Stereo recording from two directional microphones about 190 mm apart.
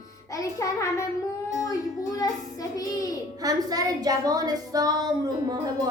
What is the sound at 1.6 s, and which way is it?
Child singing, 20° left (ahead or behind).